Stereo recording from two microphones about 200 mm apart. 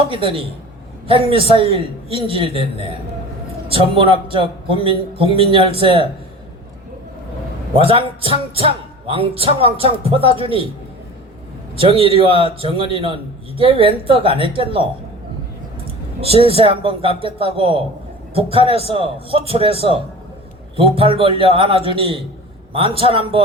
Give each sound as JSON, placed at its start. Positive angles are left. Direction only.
{"t": 0.1, "sound": "speech", "side_deg": -25}
{"t": 7.8, "sound": "speech", "side_deg": -25}
{"t": 11.8, "sound": "speech", "side_deg": -30}
{"t": 16.2, "sound": "speech", "side_deg": -30}